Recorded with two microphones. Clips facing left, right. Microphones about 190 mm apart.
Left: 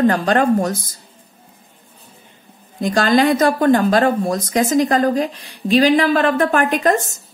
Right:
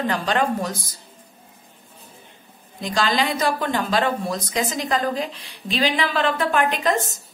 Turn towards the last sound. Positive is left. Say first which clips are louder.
# left 5 dB
turn(degrees=45)  # may be behind; listen again after turning